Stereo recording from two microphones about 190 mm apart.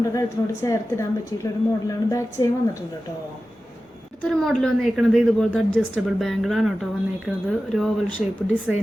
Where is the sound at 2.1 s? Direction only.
15° left (ahead or behind).